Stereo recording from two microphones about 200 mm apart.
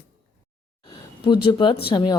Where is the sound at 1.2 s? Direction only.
25° left (ahead or behind).